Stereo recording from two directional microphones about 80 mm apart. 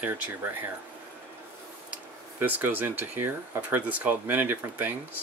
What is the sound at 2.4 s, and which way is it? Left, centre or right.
Speech, right.